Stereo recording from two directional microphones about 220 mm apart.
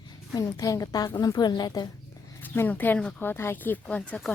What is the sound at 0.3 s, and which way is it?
Speech, 15° left (ahead or behind).